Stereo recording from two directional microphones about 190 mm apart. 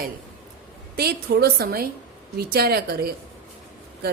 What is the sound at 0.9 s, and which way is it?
A woman's voice, 55° right (ahead or behind).